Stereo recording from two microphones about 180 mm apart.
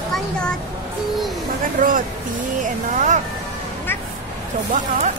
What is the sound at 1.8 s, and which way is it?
Speech, 45° right (ahead or behind).